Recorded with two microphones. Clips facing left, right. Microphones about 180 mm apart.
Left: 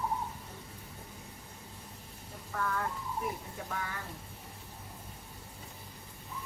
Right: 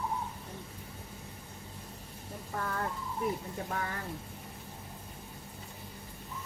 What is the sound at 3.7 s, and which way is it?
Speech, 40° right (ahead or behind).